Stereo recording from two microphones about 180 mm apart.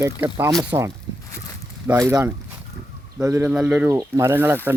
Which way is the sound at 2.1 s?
15° right (ahead or behind).